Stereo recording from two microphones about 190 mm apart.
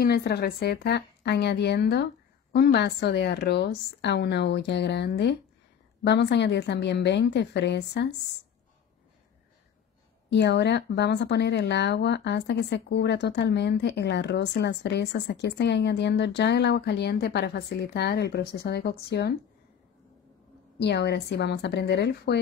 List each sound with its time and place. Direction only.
0.0 s speech: 55° left (ahead or behind)
10.3 s speech: 65° left (ahead or behind)
20.8 s speech: 60° left (ahead or behind)